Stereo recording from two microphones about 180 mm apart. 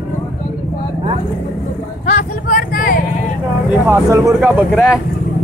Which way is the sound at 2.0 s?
45° left (ahead or behind).